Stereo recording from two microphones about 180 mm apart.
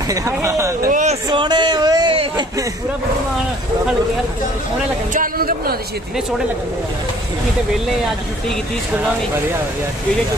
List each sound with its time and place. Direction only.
0.1 s speech: 15° right (ahead or behind)
0.8 s speech: 45° right (ahead or behind)
1.3 s a sound: 25° right (ahead or behind)
5.1 s speech: 50° right (ahead or behind)